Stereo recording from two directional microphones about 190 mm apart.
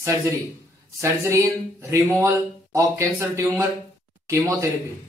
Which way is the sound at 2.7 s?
15° right (ahead or behind).